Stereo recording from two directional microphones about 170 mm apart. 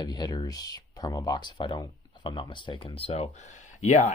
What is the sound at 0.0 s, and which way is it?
Speech, 25° left (ahead or behind).